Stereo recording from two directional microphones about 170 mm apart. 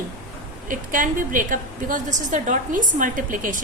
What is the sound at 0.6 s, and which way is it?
A woman's voice, 50° right (ahead or behind).